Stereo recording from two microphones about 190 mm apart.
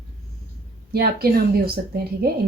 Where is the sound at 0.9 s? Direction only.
55° right (ahead or behind).